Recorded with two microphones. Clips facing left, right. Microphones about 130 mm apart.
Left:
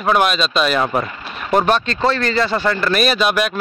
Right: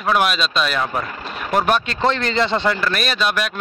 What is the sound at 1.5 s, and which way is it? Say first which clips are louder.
Speech: left 3 dB; 5° right (ahead or behind).